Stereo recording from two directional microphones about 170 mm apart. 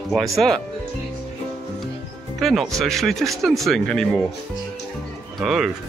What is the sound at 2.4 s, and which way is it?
Speech, centre (ahead or behind).